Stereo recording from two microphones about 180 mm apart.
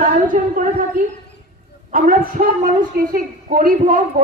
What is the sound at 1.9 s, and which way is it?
A woman's voice, 50° right (ahead or behind).